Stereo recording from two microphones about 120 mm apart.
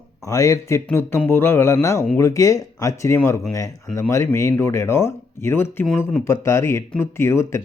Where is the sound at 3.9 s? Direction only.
5° left (ahead or behind).